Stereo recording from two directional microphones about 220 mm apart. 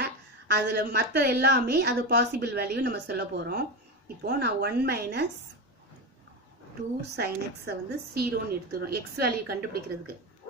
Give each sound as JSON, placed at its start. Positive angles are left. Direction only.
{"t": 0.0, "sound": "a woman's voice", "side_deg": -50}
{"t": 7.0, "sound": "a woman's voice", "side_deg": -45}